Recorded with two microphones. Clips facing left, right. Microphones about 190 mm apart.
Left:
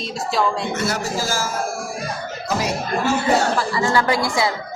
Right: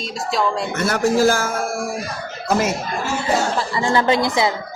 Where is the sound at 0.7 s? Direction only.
55° right (ahead or behind).